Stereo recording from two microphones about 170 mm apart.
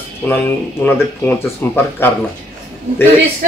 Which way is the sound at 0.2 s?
10° left (ahead or behind).